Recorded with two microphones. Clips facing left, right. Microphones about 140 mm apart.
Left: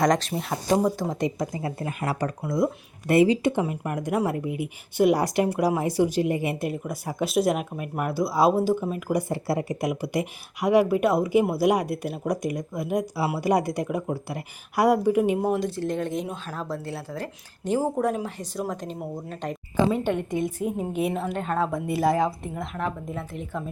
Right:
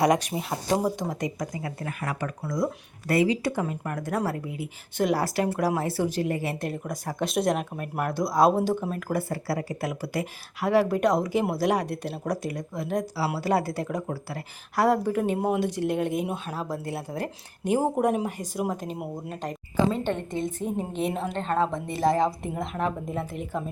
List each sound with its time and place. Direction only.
0.0 s speech: 10° right (ahead or behind)
1.1 s speech: 25° left (ahead or behind)
2.0 s speech: 35° left (ahead or behind)
2.4 s speech: 25° left (ahead or behind)
9.3 s speech: 20° left (ahead or behind)
15.4 s speech: 5° right (ahead or behind)
19.9 s speech: 10° left (ahead or behind)
23.5 s speech: centre (ahead or behind)